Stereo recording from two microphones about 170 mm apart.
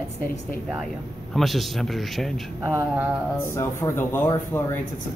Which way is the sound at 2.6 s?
15° right (ahead or behind).